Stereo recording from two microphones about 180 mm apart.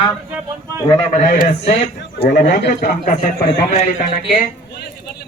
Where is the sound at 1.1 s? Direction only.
45° left (ahead or behind).